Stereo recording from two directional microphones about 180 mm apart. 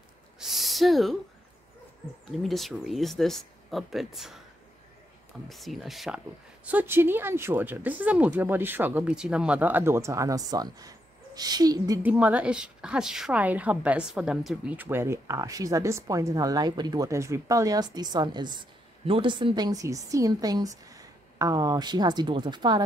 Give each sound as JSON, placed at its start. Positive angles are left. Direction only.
{"t": 0.4, "sound": "owl", "side_deg": 0}
{"t": 2.3, "sound": "speech", "side_deg": 0}
{"t": 5.5, "sound": "speech", "side_deg": 0}
{"t": 12.0, "sound": "a woman's voice", "side_deg": -10}